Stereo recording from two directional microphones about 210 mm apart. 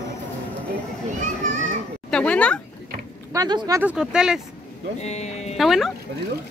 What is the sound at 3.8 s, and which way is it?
Speech, 5° right (ahead or behind).